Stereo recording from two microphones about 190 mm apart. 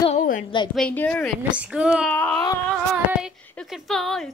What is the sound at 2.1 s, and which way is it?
Speech, 10° left (ahead or behind).